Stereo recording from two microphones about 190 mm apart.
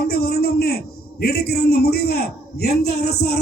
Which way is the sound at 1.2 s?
55° left (ahead or behind).